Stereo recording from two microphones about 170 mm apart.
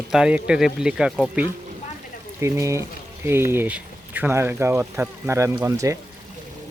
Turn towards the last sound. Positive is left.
turn(degrees=-20)  # may be behind; listen again after turning